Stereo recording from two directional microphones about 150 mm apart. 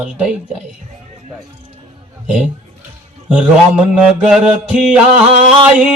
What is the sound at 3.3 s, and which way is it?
A man's voice, 10° right (ahead or behind).